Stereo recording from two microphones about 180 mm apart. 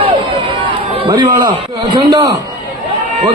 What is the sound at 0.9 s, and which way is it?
A man's voice, 30° right (ahead or behind).